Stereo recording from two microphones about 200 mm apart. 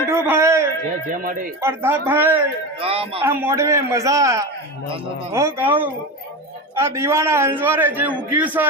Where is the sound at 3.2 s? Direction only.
10° right (ahead or behind).